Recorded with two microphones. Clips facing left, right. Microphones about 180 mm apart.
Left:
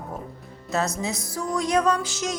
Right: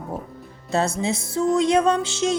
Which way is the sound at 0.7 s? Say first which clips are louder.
Right 4 dB; 30° right (ahead or behind).